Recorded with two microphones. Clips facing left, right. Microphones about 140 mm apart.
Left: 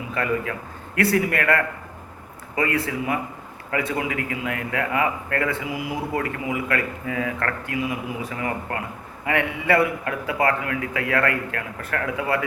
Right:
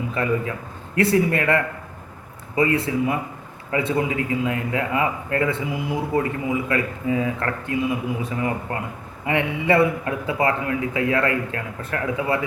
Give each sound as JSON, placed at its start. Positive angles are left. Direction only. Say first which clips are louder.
{"t": 0.1, "sound": "a man's voice", "louder": "left 1 dB", "side_deg": -25}